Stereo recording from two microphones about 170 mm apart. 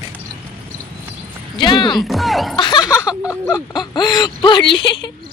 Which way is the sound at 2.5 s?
25° left (ahead or behind).